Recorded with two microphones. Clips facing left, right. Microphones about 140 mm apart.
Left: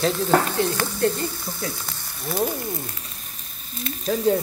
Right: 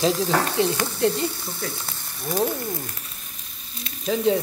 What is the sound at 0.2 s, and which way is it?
Frying, 5° right (ahead or behind).